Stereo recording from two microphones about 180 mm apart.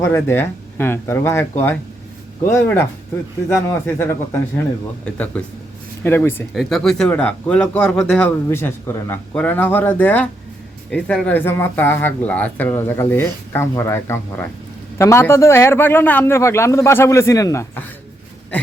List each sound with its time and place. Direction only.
0.0 s speech: 15° left (ahead or behind)
6.5 s speech: centre (ahead or behind); by 17.8 s 15° left (ahead or behind)